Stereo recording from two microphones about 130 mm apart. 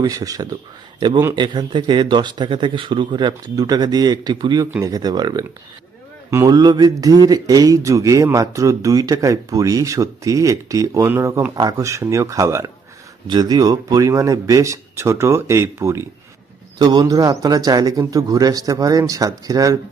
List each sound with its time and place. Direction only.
0.0 s speech: 30° right (ahead or behind)
0.9 s a man's voice: 40° right (ahead or behind); by 12.7 s 25° right (ahead or behind)
13.2 s speech: 35° right (ahead or behind)
16.7 s speech: 35° right (ahead or behind)